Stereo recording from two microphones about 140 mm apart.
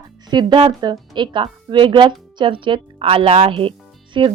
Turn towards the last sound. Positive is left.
turn(degrees=-40)  # may be behind; listen again after turning